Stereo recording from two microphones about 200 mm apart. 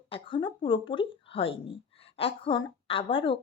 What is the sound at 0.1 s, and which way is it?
Speech, 25° left (ahead or behind).